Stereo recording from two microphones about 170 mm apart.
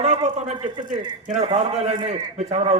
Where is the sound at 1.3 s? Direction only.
35° right (ahead or behind).